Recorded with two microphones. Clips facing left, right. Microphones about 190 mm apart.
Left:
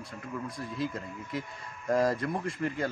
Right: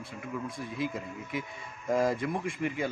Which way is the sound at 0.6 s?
60° right (ahead or behind).